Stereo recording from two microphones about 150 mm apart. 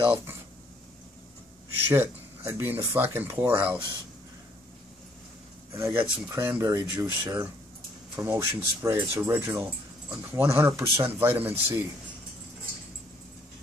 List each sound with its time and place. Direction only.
1.9 s speech: 20° right (ahead or behind)
5.8 s speech: 15° right (ahead or behind)